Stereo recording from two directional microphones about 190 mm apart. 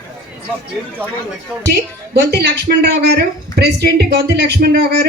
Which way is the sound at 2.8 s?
60° right (ahead or behind).